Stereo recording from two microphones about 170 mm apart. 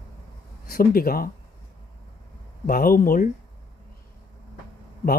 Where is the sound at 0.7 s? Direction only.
60° left (ahead or behind).